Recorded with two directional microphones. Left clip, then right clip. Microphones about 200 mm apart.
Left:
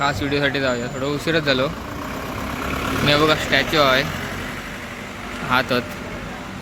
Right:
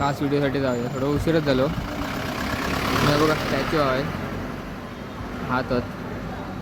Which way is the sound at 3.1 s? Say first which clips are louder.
Left 7 dB; 20° left (ahead or behind).